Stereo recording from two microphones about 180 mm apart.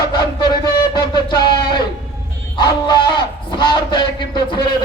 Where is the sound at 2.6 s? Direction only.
25° left (ahead or behind).